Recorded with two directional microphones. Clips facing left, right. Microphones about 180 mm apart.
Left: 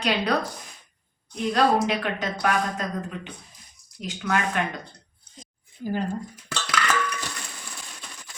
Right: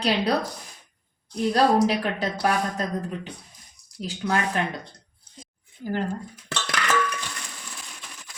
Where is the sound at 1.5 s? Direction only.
35° right (ahead or behind).